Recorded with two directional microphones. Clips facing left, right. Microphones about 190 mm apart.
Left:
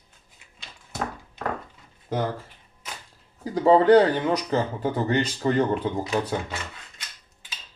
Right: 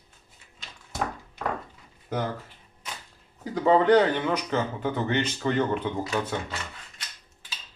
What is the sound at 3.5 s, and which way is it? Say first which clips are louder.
Speech: left 3 dB; 35° left (ahead or behind).